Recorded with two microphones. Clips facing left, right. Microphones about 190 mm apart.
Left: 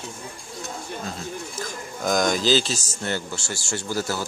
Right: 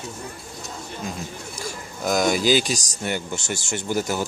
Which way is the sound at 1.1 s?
10° right (ahead or behind).